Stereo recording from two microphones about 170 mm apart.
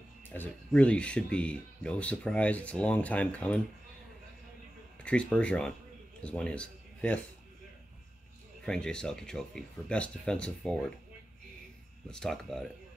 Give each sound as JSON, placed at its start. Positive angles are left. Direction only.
{"t": 0.2, "sound": "speech", "side_deg": 10}
{"t": 5.0, "sound": "speech", "side_deg": 5}
{"t": 8.6, "sound": "speech", "side_deg": 5}
{"t": 12.1, "sound": "speech", "side_deg": 5}